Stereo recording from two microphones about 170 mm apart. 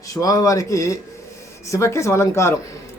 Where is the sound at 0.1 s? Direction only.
20° left (ahead or behind).